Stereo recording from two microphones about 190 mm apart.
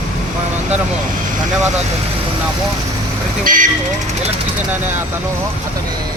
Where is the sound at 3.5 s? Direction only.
45° right (ahead or behind).